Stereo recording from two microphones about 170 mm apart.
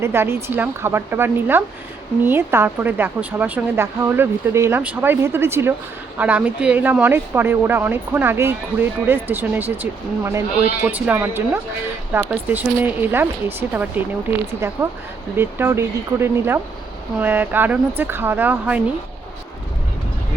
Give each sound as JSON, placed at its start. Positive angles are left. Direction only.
{"t": 0.0, "sound": "a woman's voice", "side_deg": -15}